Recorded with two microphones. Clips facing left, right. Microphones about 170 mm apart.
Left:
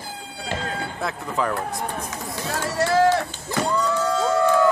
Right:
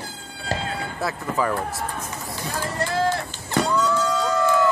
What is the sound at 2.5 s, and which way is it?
Run, 75° left (ahead or behind).